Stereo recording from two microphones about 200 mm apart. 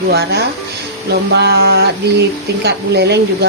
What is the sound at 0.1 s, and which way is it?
A woman's voice, 55° right (ahead or behind).